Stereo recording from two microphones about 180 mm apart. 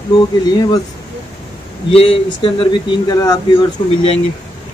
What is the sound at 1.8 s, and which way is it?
Speech, 30° left (ahead or behind).